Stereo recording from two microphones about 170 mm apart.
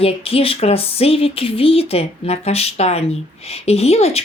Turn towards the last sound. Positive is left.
turn(degrees=35)  # may be behind; listen again after turning